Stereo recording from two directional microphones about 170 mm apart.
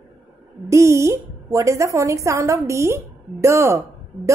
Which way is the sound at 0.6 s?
15° right (ahead or behind).